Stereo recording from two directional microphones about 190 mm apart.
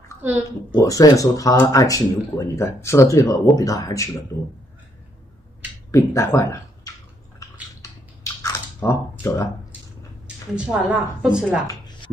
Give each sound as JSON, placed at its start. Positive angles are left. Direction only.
{"t": 0.7, "sound": "speech", "side_deg": 15}
{"t": 5.9, "sound": "speech", "side_deg": 15}
{"t": 7.8, "sound": "chewing", "side_deg": 15}
{"t": 10.2, "sound": "a woman's voice", "side_deg": -5}